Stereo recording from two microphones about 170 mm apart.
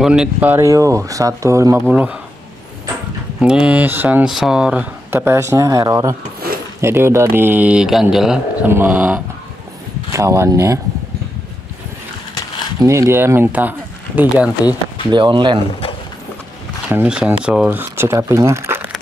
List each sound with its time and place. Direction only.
0.0 s speech: 5° right (ahead or behind)
1.8 s speech: 10° right (ahead or behind)
3.3 s speech: 5° right (ahead or behind)
12.8 s speech: 15° right (ahead or behind)
15.0 s speech: 25° right (ahead or behind)
16.9 s speech: 10° right (ahead or behind)